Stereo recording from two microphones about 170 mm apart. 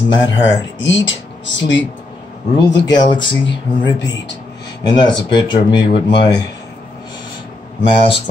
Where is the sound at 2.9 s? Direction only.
25° left (ahead or behind).